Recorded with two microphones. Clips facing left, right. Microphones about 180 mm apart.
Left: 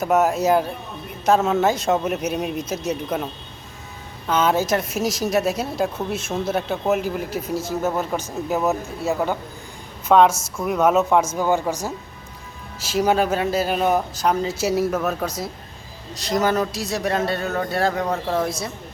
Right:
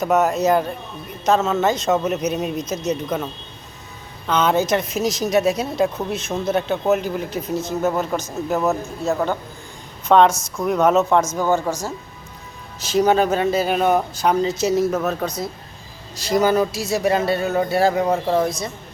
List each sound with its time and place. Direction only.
0.0 s speech: 5° left (ahead or behind)
4.3 s speech: 5° left (ahead or behind)
7.5 s speech: 20° right (ahead or behind)
7.9 s speech: 10° left (ahead or behind)